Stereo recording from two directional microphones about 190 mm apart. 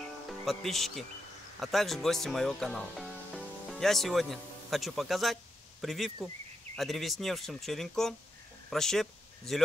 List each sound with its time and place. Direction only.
0.5 s speech: centre (ahead or behind)